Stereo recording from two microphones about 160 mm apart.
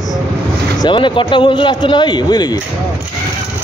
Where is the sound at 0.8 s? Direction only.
30° left (ahead or behind).